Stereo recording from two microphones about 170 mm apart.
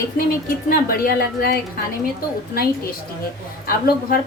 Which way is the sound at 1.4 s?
65° left (ahead or behind).